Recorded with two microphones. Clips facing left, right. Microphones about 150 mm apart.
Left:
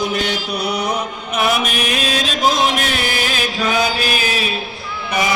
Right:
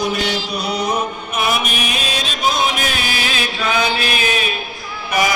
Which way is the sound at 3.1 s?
45° left (ahead or behind).